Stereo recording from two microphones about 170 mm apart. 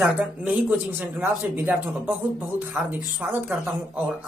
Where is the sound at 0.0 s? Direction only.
5° right (ahead or behind).